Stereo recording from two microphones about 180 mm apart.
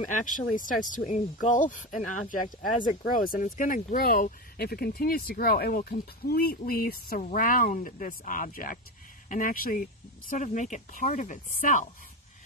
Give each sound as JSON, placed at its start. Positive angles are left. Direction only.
{"t": 0.4, "sound": "speech", "side_deg": 45}